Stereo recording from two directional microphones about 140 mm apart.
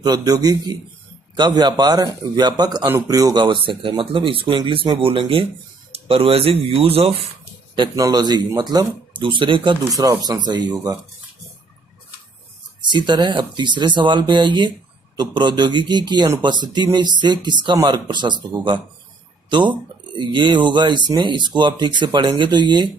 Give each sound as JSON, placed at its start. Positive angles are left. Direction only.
{"t": 0.0, "sound": "a man's voice", "side_deg": -30}
{"t": 12.8, "sound": "speech", "side_deg": -35}
{"t": 20.2, "sound": "speech", "side_deg": -35}